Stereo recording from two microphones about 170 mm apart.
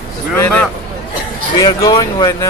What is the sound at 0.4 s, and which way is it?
Speech, 10° left (ahead or behind).